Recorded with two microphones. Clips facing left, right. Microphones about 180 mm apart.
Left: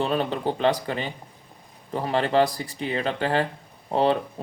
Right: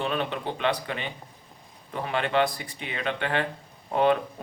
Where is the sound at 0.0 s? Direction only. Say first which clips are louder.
Left 4 dB; 35° left (ahead or behind).